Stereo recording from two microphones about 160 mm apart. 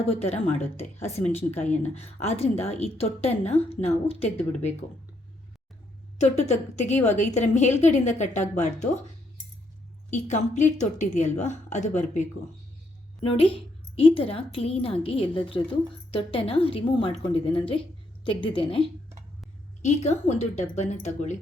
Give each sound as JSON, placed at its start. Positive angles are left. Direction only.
{"t": 0.0, "sound": "a woman's voice", "side_deg": 40}
{"t": 6.1, "sound": "a woman's voice", "side_deg": 45}
{"t": 10.1, "sound": "a woman's voice", "side_deg": 50}
{"t": 13.2, "sound": "a woman's voice", "side_deg": 35}
{"t": 19.8, "sound": "a woman's voice", "side_deg": 45}